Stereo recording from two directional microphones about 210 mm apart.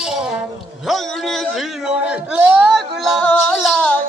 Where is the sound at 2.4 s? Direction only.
10° right (ahead or behind).